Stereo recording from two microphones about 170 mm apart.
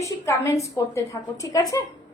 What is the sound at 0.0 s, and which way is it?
A woman's voice, 20° left (ahead or behind).